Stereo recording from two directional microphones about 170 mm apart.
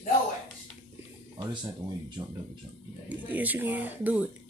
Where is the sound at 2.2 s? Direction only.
30° right (ahead or behind).